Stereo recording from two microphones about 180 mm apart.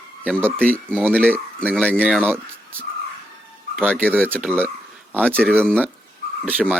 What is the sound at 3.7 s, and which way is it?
Speech, 5° right (ahead or behind).